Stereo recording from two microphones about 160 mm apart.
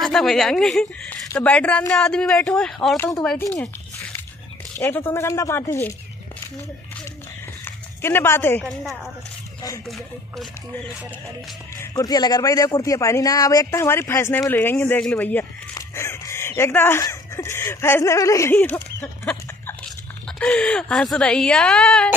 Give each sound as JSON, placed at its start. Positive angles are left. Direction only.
{"t": 0.0, "sound": "speech", "side_deg": 0}
{"t": 4.7, "sound": "speech", "side_deg": 15}
{"t": 7.6, "sound": "speech", "side_deg": 15}
{"t": 9.8, "sound": "speech", "side_deg": 0}
{"t": 11.7, "sound": "a man's voice", "side_deg": 20}